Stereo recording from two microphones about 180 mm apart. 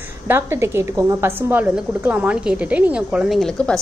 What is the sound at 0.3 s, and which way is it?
A woman's voice, 15° right (ahead or behind).